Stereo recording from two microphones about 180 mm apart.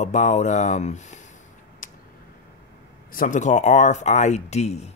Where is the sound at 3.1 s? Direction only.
45° left (ahead or behind).